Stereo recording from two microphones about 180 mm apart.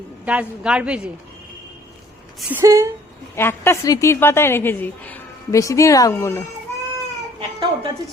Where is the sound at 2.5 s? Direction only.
15° right (ahead or behind).